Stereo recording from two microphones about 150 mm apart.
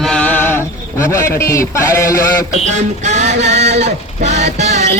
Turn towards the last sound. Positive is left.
turn(degrees=-50)  # may be behind; listen again after turning